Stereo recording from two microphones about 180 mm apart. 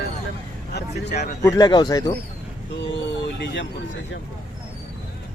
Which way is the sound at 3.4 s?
85° left.